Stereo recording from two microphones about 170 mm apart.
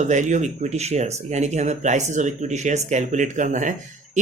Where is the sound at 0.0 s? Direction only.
45° right (ahead or behind).